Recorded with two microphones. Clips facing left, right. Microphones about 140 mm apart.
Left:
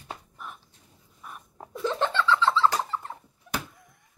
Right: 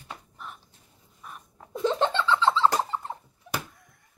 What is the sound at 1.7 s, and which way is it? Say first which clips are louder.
Laughter: right 2 dB; 20° right (ahead or behind).